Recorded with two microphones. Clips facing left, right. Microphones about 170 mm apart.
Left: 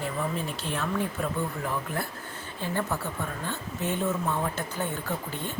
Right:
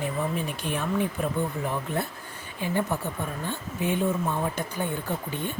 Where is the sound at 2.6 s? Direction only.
15° right (ahead or behind).